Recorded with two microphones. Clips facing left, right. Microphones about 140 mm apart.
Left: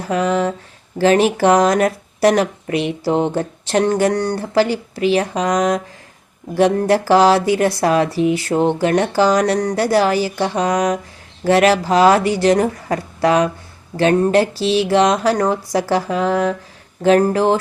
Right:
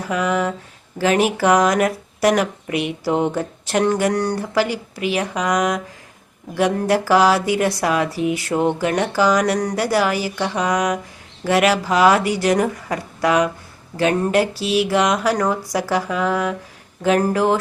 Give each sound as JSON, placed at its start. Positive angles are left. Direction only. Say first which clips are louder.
{"t": 0.1, "sound": "speech", "louder": "left 3 dB", "side_deg": 30}